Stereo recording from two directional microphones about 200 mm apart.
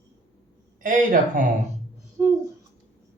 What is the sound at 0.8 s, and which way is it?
Speech, 40° right (ahead or behind).